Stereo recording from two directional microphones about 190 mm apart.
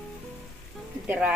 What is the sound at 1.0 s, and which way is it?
Speech, 5° right (ahead or behind).